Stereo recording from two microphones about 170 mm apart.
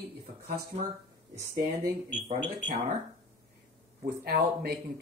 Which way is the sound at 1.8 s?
45° right (ahead or behind).